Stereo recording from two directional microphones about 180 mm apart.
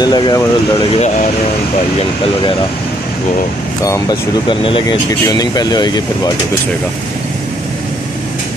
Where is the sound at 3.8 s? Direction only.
20° left (ahead or behind).